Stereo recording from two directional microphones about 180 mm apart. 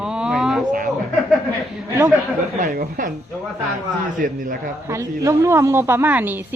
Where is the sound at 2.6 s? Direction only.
50° right (ahead or behind).